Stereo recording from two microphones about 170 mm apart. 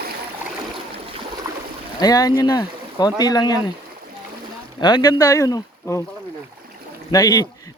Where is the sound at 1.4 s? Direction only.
15° right (ahead or behind).